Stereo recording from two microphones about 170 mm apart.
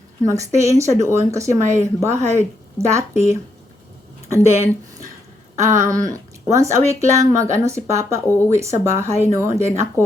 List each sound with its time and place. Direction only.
0.3 s speech: 15° right (ahead or behind)
4.3 s speech: 15° right (ahead or behind)